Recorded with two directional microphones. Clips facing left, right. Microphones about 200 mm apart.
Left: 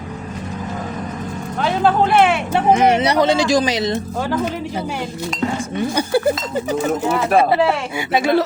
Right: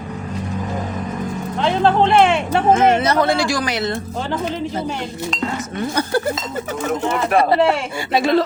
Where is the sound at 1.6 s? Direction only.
5° left (ahead or behind).